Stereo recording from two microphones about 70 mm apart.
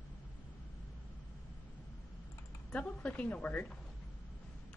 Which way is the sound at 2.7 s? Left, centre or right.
Centre.